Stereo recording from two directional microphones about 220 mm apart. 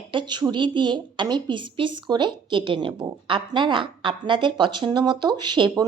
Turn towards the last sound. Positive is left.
turn(degrees=-20)  # may be behind; listen again after turning